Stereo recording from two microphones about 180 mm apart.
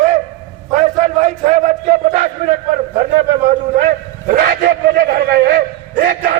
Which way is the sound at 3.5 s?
50° right (ahead or behind).